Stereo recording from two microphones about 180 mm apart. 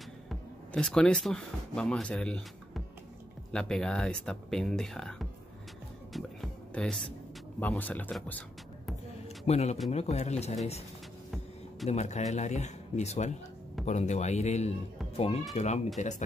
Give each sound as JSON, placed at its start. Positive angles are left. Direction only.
{"t": 0.3, "sound": "speech", "side_deg": 5}
{"t": 6.1, "sound": "music", "side_deg": 5}
{"t": 7.6, "sound": "a man's voice", "side_deg": 10}
{"t": 9.5, "sound": "speech", "side_deg": 35}
{"t": 11.9, "sound": "speech", "side_deg": 40}